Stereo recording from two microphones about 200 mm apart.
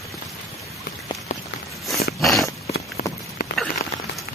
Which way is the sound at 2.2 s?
Centre (ahead or behind).